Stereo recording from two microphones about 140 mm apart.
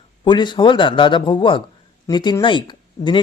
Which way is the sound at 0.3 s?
35° left (ahead or behind).